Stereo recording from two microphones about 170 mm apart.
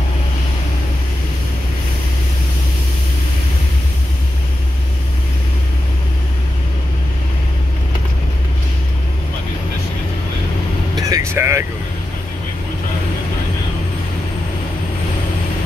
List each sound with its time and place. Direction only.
11.0 s vehicle: 20° right (ahead or behind)